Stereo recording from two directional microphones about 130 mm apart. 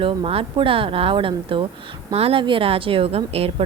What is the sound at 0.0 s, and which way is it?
A woman's voice, 45° right (ahead or behind).